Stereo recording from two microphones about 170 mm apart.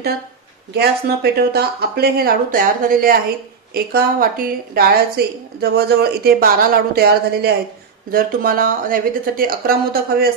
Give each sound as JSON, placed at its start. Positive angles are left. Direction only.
{"t": 0.7, "sound": "a woman's voice", "side_deg": -70}